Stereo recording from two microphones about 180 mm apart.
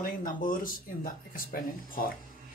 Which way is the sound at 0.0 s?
50° left (ahead or behind).